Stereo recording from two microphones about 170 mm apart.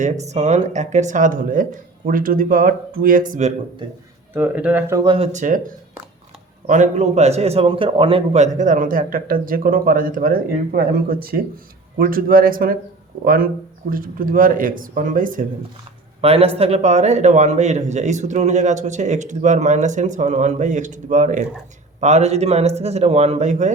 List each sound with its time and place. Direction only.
0.0 s a man's voice: 40° right (ahead or behind)
3.8 s speech: 25° right (ahead or behind)
4.4 s speech: 10° right (ahead or behind)
5.0 s a man's voice: 35° right (ahead or behind); by 5.6 s 50° right (ahead or behind)
6.7 s a man's voice: 45° right (ahead or behind)
16.2 s a man's voice: 35° right (ahead or behind)